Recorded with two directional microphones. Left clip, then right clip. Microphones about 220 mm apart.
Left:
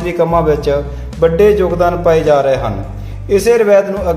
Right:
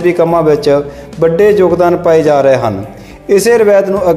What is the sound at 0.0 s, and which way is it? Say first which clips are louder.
A man's voice: right 4 dB; 35° right (ahead or behind).